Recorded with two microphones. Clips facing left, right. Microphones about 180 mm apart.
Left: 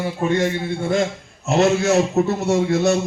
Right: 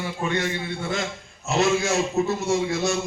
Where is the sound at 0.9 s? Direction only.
55° left (ahead or behind).